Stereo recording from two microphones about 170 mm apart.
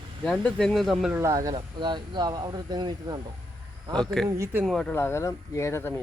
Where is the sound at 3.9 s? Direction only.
Centre (ahead or behind).